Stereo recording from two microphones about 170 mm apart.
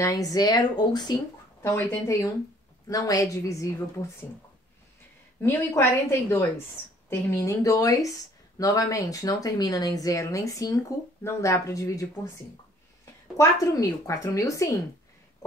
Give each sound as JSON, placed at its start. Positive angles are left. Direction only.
{"t": 0.0, "sound": "a woman's voice", "side_deg": 20}
{"t": 5.4, "sound": "a woman's voice", "side_deg": 15}
{"t": 13.4, "sound": "speech", "side_deg": 20}